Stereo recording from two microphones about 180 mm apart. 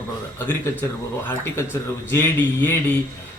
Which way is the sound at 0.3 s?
10° left (ahead or behind).